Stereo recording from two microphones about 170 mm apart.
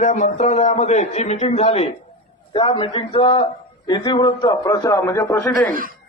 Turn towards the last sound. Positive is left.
turn(degrees=15)  # may be behind; listen again after turning